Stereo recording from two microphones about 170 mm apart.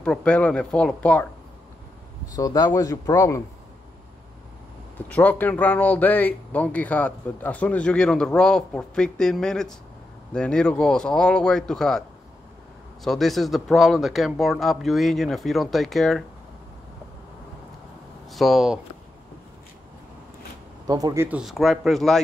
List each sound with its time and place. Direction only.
0.0 s speech: 5° left (ahead or behind)
2.3 s speech: 20° left (ahead or behind)
4.9 s a man's voice: 10° left (ahead or behind)
13.0 s a man's voice: centre (ahead or behind)
18.3 s a man's voice: centre (ahead or behind)
20.8 s speech: 20° right (ahead or behind)
21.4 s a man's voice: centre (ahead or behind)